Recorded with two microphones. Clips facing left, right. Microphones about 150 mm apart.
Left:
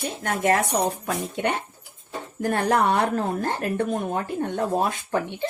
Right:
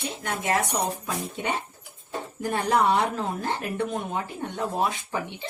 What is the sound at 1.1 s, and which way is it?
Speech, 65° left (ahead or behind).